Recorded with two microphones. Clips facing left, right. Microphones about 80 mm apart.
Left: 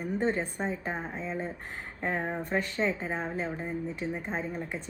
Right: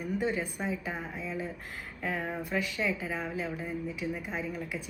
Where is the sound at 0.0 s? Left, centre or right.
Left.